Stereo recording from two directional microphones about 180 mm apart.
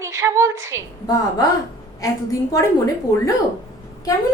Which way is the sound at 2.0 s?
20° left (ahead or behind).